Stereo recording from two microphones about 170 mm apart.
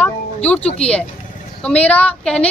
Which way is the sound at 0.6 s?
35° left (ahead or behind).